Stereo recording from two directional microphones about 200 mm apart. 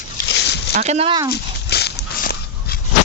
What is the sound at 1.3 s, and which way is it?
Dog, 55° left (ahead or behind).